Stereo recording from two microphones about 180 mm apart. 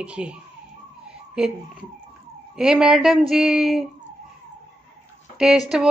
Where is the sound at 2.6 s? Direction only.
5° right (ahead or behind).